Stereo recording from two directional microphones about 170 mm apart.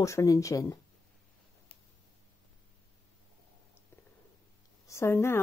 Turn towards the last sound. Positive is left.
turn(degrees=15)  # may be behind; listen again after turning